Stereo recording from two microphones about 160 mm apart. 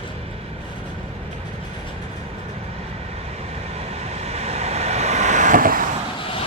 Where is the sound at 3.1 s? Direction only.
40° right (ahead or behind); by 5.9 s 60° right (ahead or behind).